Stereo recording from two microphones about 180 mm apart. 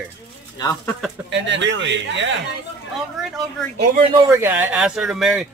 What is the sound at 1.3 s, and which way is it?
Speech, 80° right.